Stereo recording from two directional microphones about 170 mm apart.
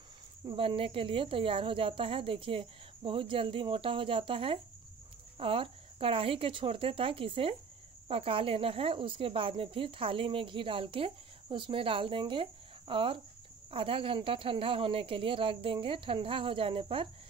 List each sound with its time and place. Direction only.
0.5 s speech: 30° right (ahead or behind)